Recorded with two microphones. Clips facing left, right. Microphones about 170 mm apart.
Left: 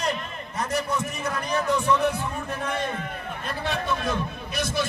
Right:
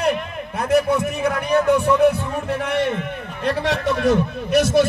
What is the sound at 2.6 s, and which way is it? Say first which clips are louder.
A man's voice: right 7 dB; 75° right (ahead or behind).